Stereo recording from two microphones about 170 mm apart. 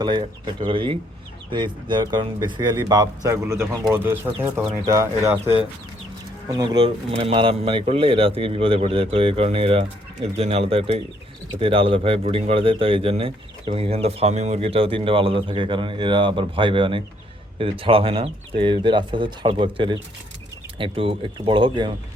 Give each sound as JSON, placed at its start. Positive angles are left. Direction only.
{"t": 0.0, "sound": "speech", "side_deg": -25}